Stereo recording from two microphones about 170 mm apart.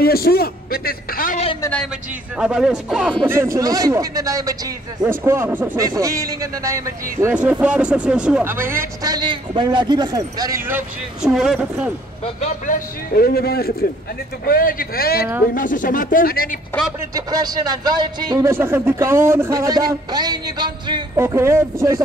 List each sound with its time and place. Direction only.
0.0 s a man's voice: 65° left (ahead or behind)
2.3 s speech: 5° right (ahead or behind)
11.2 s speech: centre (ahead or behind)
12.4 s a man's voice: 50° left (ahead or behind)
17.1 s speech: 20° right (ahead or behind)
21.2 s speech: 15° right (ahead or behind)